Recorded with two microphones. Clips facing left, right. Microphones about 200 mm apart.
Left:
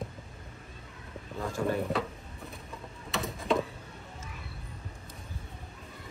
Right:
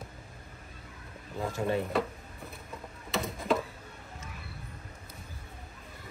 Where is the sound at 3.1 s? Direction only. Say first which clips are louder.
Right 1 dB; centre (ahead or behind).